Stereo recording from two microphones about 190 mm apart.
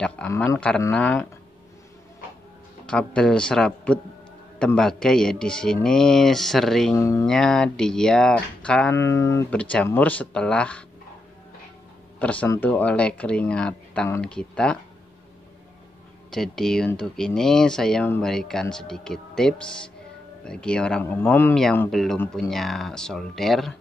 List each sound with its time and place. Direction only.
0.0 s speech: 5° left (ahead or behind)
2.9 s speech: 5° left (ahead or behind)
7.0 s speech: 15° left (ahead or behind)
7.2 s speech: 5° left (ahead or behind)
12.2 s speech: 5° left (ahead or behind)
16.3 s speech: centre (ahead or behind)